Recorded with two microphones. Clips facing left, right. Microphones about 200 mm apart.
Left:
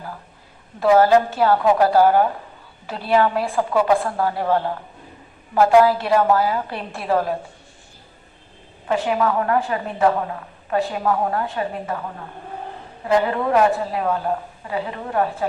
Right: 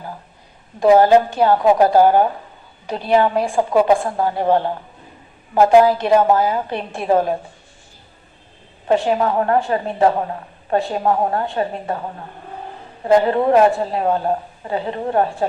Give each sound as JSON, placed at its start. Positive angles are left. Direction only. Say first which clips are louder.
{"t": 0.8, "sound": "a woman's voice", "louder": "right 3 dB", "side_deg": -20}
{"t": 8.9, "sound": "a woman's voice", "louder": "right 3 dB", "side_deg": -30}